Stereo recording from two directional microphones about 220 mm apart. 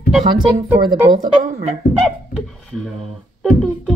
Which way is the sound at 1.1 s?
40° right (ahead or behind).